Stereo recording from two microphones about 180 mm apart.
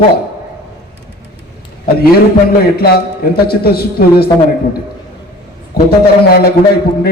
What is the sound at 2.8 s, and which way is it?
Speech, 60° left (ahead or behind).